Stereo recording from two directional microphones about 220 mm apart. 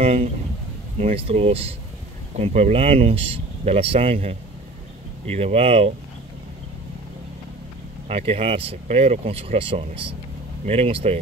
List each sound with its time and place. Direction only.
0.0 s speech: 25° right (ahead or behind)
8.1 s speech: 25° right (ahead or behind)